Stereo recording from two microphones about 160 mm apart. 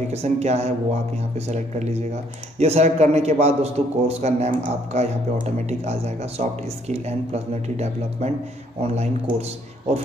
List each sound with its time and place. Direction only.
0.1 s a man's voice: 40° right (ahead or behind)